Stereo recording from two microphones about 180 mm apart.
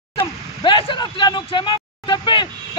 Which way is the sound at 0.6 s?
25° left (ahead or behind).